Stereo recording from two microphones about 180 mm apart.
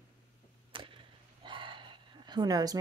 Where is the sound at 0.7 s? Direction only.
30° right (ahead or behind).